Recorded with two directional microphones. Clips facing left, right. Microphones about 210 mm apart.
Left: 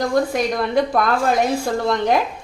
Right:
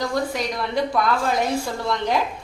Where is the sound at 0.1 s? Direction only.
50° left (ahead or behind).